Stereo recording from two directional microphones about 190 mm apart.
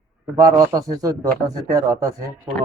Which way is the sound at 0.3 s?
15° right (ahead or behind).